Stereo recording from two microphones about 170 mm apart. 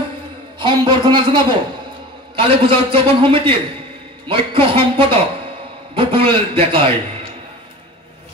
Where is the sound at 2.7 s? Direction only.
35° right (ahead or behind).